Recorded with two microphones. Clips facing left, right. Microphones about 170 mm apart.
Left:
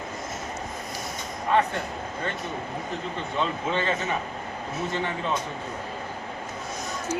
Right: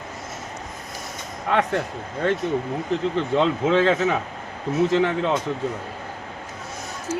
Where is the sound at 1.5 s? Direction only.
85° right.